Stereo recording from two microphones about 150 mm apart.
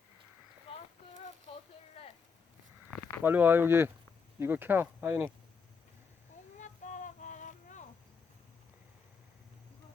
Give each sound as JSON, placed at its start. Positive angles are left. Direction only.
{"t": 2.0, "sound": "a sound", "side_deg": 40}
{"t": 3.2, "sound": "speech", "side_deg": -15}
{"t": 6.6, "sound": "child singing", "side_deg": 55}